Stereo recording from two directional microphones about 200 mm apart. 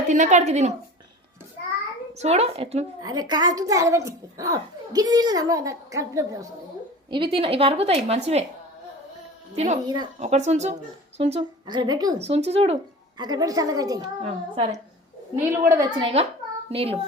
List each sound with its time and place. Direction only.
0.1 s a child's voice: 35° right (ahead or behind)
2.1 s a child's voice: 30° right (ahead or behind)
3.0 s a child's voice: 20° right (ahead or behind)
9.8 s a woman's voice: 20° right (ahead or behind)
10.2 s a child's voice: 35° right (ahead or behind)
12.2 s a woman's voice: 30° right (ahead or behind)
14.2 s a child's voice: 30° right (ahead or behind)
15.4 s a child's voice: 15° right (ahead or behind)
16.7 s a woman's voice: 30° right (ahead or behind)